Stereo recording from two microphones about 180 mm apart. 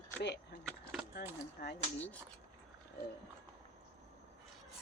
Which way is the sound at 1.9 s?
10° left (ahead or behind).